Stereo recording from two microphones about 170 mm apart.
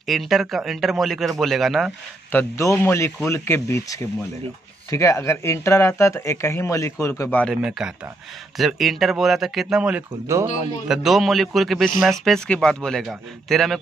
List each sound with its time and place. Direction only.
0.0 s speech: centre (ahead or behind)
2.3 s speech: 15° left (ahead or behind)
7.6 s speech: 5° right (ahead or behind)